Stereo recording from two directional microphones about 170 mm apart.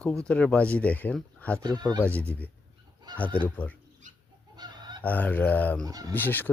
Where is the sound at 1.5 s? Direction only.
25° right (ahead or behind).